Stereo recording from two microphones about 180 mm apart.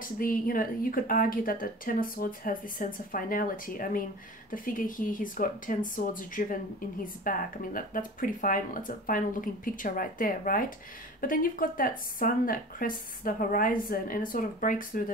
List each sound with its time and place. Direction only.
0.0 s speech: 50° left (ahead or behind)